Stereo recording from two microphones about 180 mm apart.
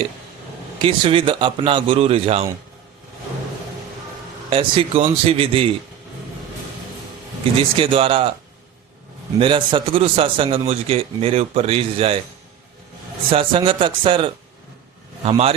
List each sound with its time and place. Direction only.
0.8 s a man's voice: 30° right (ahead or behind)
4.4 s a man's voice: 30° right (ahead or behind)
7.8 s a man's voice: 30° right (ahead or behind)
9.4 s a man's voice: 30° right (ahead or behind)
13.3 s a man's voice: 30° right (ahead or behind)